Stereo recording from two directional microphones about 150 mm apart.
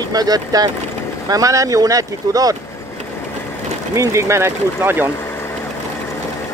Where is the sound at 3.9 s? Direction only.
20° right (ahead or behind).